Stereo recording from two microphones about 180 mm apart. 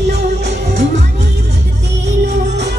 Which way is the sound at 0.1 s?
65° right (ahead or behind).